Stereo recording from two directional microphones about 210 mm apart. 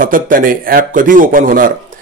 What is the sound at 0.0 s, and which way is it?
Speech, 40° right (ahead or behind).